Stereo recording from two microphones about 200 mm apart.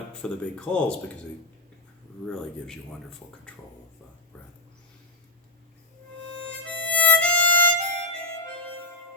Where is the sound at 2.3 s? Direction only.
5° left (ahead or behind).